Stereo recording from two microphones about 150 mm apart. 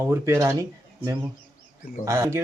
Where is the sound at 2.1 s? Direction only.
20° right (ahead or behind).